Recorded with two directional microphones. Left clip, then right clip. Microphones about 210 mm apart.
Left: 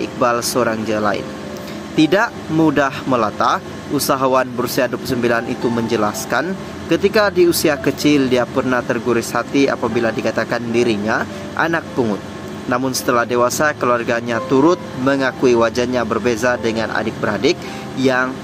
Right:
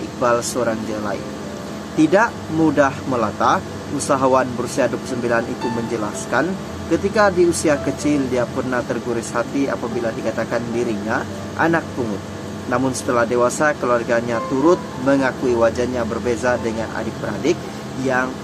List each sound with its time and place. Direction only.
0.2 s speech: 20° left (ahead or behind)
18.0 s speech: 25° left (ahead or behind)